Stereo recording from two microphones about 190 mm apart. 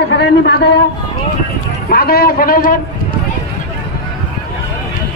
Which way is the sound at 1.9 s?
55° left (ahead or behind).